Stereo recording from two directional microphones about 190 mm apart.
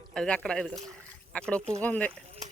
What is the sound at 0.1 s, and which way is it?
Speech, 5° left (ahead or behind).